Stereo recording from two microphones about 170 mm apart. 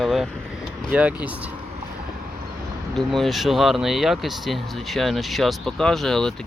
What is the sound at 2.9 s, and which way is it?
Speech, centre (ahead or behind).